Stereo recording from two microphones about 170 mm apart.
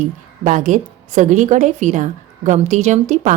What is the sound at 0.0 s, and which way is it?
A woman's voice, 50° right (ahead or behind).